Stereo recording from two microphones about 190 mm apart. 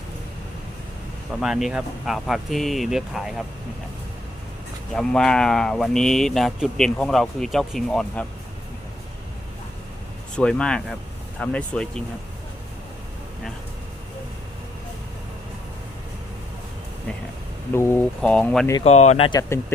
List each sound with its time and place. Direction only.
1.4 s speech: centre (ahead or behind)
4.9 s speech: 5° left (ahead or behind)
10.3 s speech: 5° left (ahead or behind)
17.7 s speech: 10° left (ahead or behind)
18.9 s speech: 35° left (ahead or behind)